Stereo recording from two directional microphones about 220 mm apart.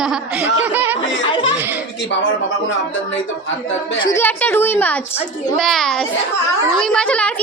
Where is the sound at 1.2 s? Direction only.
25° left (ahead or behind).